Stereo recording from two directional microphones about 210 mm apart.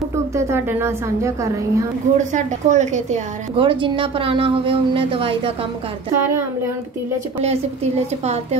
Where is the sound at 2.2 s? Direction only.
35° right (ahead or behind).